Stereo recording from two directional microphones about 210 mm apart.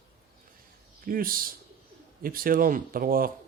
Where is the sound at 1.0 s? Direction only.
45° right (ahead or behind).